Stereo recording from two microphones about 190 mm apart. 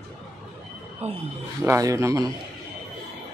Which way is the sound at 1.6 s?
15° right (ahead or behind).